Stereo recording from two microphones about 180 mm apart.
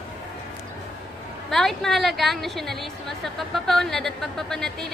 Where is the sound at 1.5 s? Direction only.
Centre (ahead or behind).